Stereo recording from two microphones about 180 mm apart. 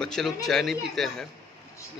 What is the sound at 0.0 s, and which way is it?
A man's voice, 5° left (ahead or behind).